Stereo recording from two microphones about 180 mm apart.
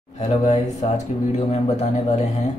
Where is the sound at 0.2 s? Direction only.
40° left (ahead or behind).